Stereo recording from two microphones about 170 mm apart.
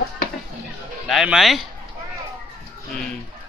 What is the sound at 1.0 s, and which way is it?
Speech, 5° right (ahead or behind).